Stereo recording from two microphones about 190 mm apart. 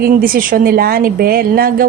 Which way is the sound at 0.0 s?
50° right (ahead or behind).